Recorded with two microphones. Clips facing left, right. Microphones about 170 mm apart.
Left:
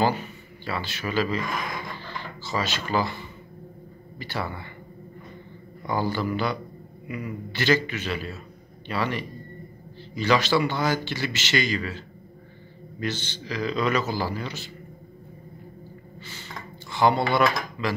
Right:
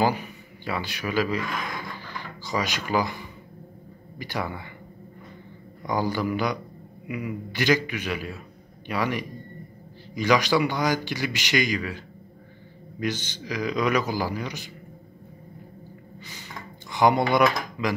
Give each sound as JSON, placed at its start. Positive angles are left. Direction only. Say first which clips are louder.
{"t": 0.0, "sound": "a sound", "louder": "even", "side_deg": -10}
{"t": 4.2, "sound": "a man's voice", "louder": "right 1 dB", "side_deg": -15}
{"t": 5.9, "sound": "a man's voice", "louder": "right 1 dB", "side_deg": -15}
{"t": 13.0, "sound": "a man's voice", "louder": "right 2 dB", "side_deg": -10}
{"t": 16.9, "sound": "speech", "louder": "right 1 dB", "side_deg": -15}